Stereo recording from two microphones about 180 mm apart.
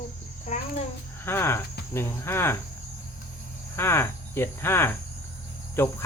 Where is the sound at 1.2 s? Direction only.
15° left (ahead or behind).